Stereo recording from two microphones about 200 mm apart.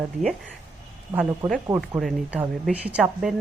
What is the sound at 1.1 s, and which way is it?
Speech, 10° right (ahead or behind).